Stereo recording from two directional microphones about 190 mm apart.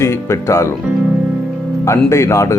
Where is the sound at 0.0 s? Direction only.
15° left (ahead or behind).